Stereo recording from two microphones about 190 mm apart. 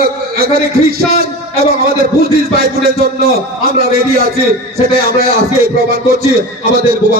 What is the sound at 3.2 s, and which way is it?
A man's voice, 50° right (ahead or behind).